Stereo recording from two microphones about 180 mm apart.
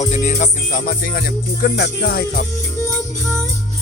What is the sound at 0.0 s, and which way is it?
Music, 40° left (ahead or behind).